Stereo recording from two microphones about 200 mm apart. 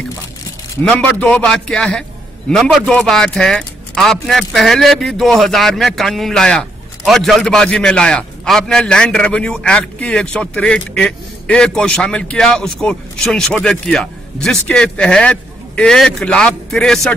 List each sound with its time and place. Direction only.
0.8 s speech: 5° left (ahead or behind)